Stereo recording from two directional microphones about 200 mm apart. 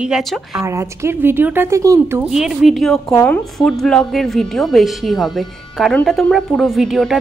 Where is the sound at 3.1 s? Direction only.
10° left (ahead or behind).